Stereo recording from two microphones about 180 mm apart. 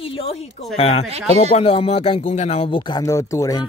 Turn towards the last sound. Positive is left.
turn(degrees=20)  # may be behind; listen again after turning